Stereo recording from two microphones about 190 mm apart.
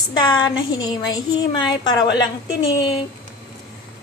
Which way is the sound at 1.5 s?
25° left (ahead or behind).